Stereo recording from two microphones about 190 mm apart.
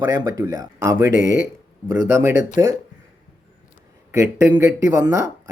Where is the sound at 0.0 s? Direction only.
20° right (ahead or behind).